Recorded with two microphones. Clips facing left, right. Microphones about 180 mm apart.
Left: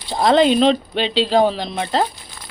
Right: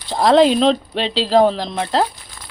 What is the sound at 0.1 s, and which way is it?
Speech, centre (ahead or behind).